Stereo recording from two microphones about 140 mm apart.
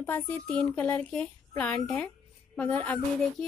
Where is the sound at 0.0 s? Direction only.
15° left (ahead or behind).